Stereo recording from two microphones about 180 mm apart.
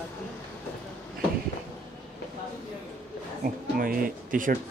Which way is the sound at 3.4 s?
50° right (ahead or behind).